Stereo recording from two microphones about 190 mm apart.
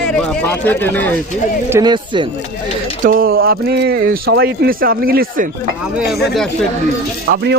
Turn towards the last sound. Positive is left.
turn(degrees=-45)  # may be behind; listen again after turning